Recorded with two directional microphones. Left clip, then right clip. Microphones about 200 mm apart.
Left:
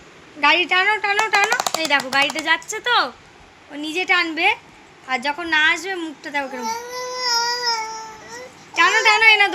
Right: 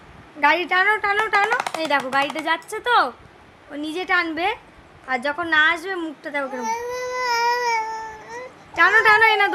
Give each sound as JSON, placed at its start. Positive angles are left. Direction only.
{"t": 0.4, "sound": "a woman's voice", "side_deg": -20}
{"t": 1.5, "sound": "speech", "side_deg": 20}
{"t": 1.7, "sound": "a woman's voice", "side_deg": -15}
{"t": 6.8, "sound": "baby cry", "side_deg": -15}